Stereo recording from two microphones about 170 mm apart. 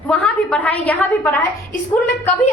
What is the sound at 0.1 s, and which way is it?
A woman's voice, 10° left (ahead or behind).